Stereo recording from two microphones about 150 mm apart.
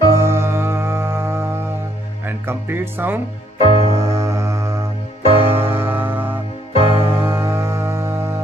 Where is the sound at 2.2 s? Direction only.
15° right (ahead or behind).